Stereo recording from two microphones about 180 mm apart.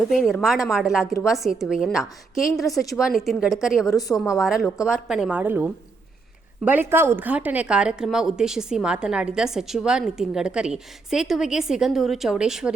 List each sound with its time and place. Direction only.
0.1 s speech: centre (ahead or behind)
3.8 s a woman's voice: 20° left (ahead or behind)
4.2 s speech: centre (ahead or behind)